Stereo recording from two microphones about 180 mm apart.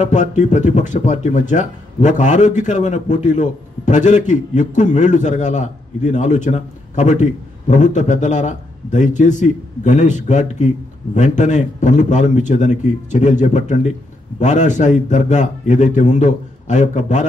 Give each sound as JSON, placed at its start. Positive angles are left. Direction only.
{"t": 0.0, "sound": "speech", "side_deg": 40}